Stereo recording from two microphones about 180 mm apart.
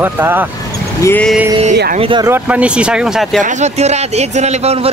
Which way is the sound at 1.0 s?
10° left (ahead or behind).